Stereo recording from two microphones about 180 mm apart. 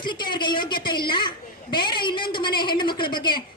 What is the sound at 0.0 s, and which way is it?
A woman's voice, 25° left (ahead or behind).